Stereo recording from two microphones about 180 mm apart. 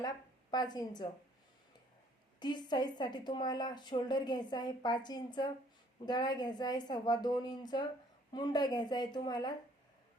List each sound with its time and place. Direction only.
0.5 s a woman's voice: 20° left (ahead or behind)
2.4 s a woman's voice: 25° left (ahead or behind)